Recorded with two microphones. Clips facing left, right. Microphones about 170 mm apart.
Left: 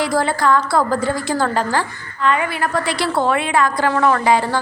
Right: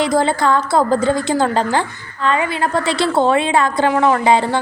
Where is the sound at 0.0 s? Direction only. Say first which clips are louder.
Right 2 dB; 20° right (ahead or behind).